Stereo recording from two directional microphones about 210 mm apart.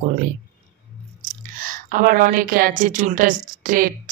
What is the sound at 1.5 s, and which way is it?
A woman's voice, 40° right (ahead or behind).